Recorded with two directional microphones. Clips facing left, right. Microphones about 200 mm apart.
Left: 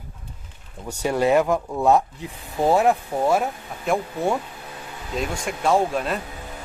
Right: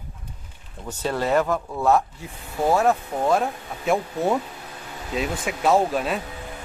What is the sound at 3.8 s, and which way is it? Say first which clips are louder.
Speech: right 1 dB; centre (ahead or behind).